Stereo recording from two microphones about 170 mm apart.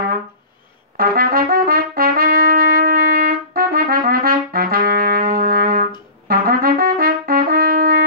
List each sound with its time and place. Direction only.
0.9 s trumpet: 60° right (ahead or behind)
6.2 s brass instrument: 60° right (ahead or behind)